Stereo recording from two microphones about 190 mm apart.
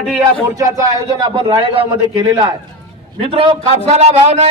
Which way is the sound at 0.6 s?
15° right (ahead or behind).